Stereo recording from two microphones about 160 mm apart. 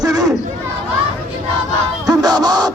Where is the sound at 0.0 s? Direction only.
25° right (ahead or behind).